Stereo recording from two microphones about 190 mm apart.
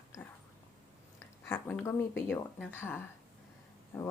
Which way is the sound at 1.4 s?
15° left (ahead or behind).